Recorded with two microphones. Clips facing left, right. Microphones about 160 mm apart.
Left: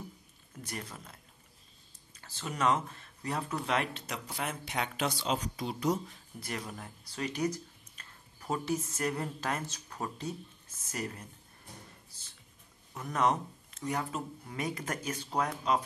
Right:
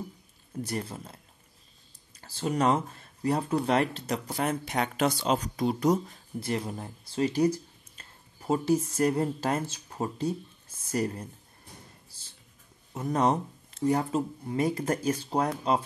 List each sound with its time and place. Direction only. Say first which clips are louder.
0.7 s speech: right 6 dB; 30° right (ahead or behind)
6.4 s speech: right 8 dB; 30° right (ahead or behind)
12.9 s speech: right 4 dB; 30° right (ahead or behind)